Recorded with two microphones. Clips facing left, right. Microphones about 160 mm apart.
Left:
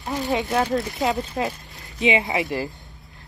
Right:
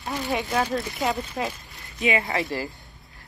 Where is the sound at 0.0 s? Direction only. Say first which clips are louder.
Left 3 dB; 20° left (ahead or behind).